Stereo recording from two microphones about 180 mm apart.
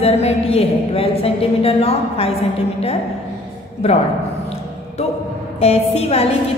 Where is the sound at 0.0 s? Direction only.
35° left (ahead or behind).